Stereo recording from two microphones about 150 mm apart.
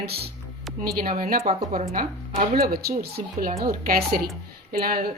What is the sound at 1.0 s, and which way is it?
Speech, 65° right (ahead or behind).